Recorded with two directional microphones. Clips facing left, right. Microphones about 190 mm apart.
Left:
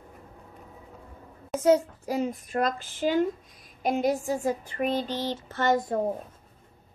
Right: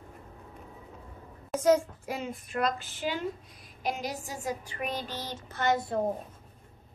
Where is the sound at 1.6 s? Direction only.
30° left (ahead or behind).